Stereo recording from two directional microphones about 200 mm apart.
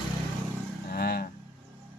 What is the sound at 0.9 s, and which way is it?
Vehicle, 50° left (ahead or behind).